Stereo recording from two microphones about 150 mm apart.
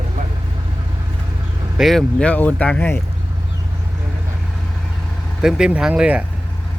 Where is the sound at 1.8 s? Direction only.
Centre (ahead or behind).